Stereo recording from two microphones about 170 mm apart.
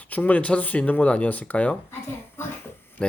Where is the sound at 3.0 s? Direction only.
5° left (ahead or behind).